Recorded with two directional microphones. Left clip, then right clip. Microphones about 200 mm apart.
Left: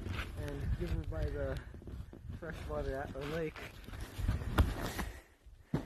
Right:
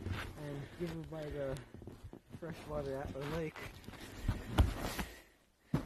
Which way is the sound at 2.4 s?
20° right (ahead or behind).